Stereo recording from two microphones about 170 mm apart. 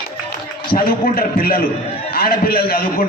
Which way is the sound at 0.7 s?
60° left (ahead or behind).